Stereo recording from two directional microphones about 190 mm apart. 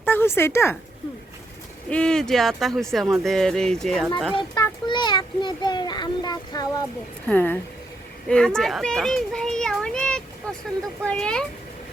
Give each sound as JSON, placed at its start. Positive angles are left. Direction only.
{"t": 0.0, "sound": "speech", "side_deg": 10}
{"t": 1.9, "sound": "speech", "side_deg": 5}
{"t": 4.4, "sound": "a sound", "side_deg": 25}
{"t": 7.3, "sound": "a child's voice", "side_deg": 10}